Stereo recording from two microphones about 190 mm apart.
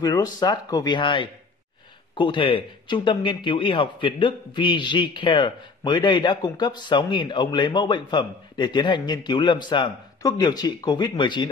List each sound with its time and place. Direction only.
0.0 s speech: 20° left (ahead or behind)